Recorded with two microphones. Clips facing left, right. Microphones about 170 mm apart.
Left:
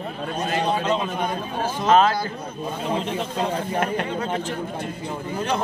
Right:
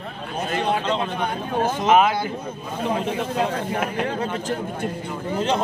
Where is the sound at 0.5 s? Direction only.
55° right (ahead or behind).